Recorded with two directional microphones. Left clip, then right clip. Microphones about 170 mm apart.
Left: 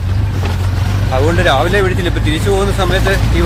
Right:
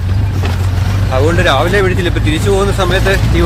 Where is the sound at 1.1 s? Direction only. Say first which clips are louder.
Right 1 dB; 15° right (ahead or behind).